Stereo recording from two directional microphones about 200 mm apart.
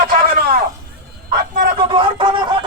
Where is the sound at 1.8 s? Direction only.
25° right (ahead or behind).